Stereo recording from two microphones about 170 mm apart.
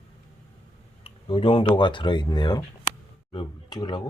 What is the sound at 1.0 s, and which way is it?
Speech, 35° left (ahead or behind).